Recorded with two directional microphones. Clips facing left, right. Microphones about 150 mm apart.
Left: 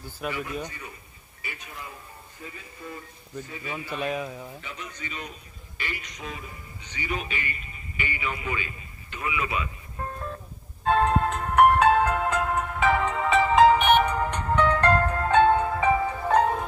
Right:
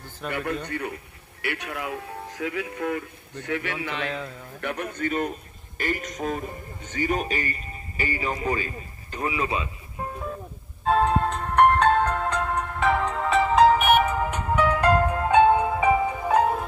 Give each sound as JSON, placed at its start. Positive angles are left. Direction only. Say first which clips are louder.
{"t": 0.3, "sound": "speech", "louder": "right 5 dB", "side_deg": -60}
{"t": 4.0, "sound": "a man's voice", "louder": "left 2 dB", "side_deg": 10}
{"t": 4.6, "sound": "a man's voice", "louder": "right 10 dB", "side_deg": -60}
{"t": 10.8, "sound": "music", "louder": "right 1 dB", "side_deg": 0}